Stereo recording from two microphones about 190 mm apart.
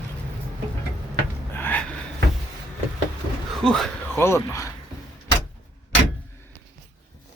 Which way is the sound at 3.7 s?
Centre (ahead or behind).